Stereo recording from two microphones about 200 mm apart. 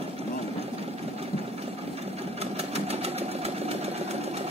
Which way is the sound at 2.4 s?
30° right (ahead or behind).